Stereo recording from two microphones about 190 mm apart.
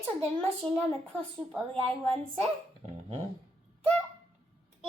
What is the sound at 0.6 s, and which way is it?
Speech, centre (ahead or behind).